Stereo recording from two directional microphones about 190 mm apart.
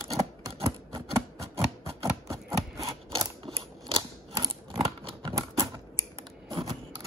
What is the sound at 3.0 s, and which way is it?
Scissors, 25° right (ahead or behind).